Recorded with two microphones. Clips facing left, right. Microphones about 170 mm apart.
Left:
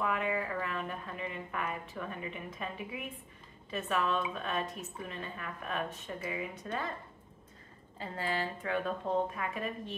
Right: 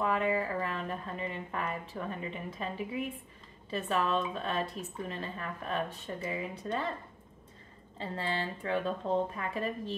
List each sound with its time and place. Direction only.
0.0 s a sound: 30° right (ahead or behind)
3.7 s speech: 35° right (ahead or behind)
8.0 s speech: 30° right (ahead or behind)